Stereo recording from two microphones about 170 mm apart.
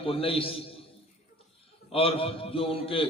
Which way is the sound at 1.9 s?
35° left (ahead or behind).